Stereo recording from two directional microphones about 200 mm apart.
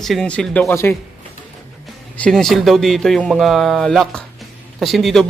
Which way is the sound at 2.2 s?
5° left (ahead or behind).